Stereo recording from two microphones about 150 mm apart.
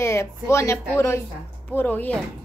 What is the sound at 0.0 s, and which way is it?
Speech, 20° left (ahead or behind).